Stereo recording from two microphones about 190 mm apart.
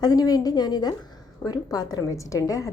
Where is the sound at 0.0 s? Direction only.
20° left (ahead or behind).